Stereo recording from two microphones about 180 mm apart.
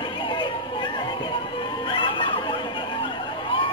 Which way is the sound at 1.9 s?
25° left (ahead or behind).